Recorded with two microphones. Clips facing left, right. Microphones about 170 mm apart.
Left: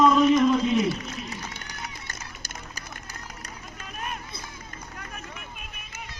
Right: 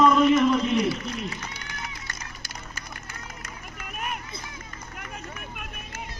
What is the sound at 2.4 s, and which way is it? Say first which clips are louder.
Run: even; 40° left (ahead or behind).